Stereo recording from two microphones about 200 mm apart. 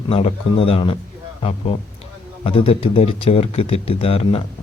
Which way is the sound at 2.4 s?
25° left (ahead or behind).